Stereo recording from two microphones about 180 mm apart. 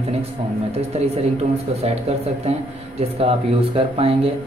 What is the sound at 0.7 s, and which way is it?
Speech, 35° right (ahead or behind).